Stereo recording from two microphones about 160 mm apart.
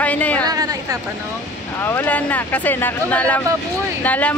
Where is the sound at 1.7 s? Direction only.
15° left (ahead or behind).